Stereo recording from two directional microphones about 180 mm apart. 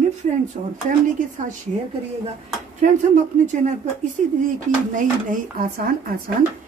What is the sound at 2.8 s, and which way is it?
Speech, 45° right (ahead or behind).